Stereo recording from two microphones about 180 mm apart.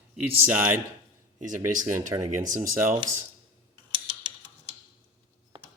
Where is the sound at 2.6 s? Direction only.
15° right (ahead or behind).